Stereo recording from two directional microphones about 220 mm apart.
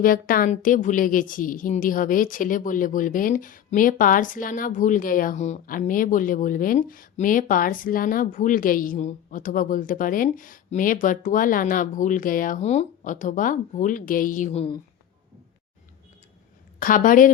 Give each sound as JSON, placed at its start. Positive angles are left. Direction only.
{"t": 0.0, "sound": "a woman's voice", "side_deg": 40}
{"t": 16.8, "sound": "a woman's voice", "side_deg": 40}